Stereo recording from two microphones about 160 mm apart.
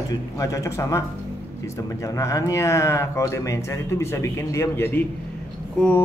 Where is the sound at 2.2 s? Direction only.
20° left (ahead or behind).